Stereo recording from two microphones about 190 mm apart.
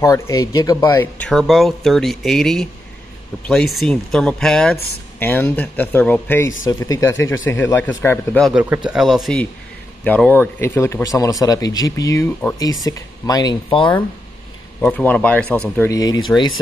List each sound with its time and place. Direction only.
0.0 s speech: 20° left (ahead or behind)
1.2 s speech: centre (ahead or behind); by 13.9 s 25° left (ahead or behind)
14.8 s speech: 5° left (ahead or behind)
15.9 s speech: 20° left (ahead or behind)